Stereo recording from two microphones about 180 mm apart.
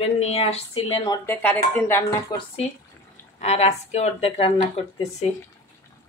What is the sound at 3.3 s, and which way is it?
A woman's voice, 35° left (ahead or behind).